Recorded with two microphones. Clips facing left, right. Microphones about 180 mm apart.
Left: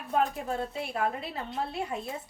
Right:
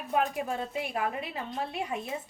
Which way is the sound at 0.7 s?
15° right (ahead or behind).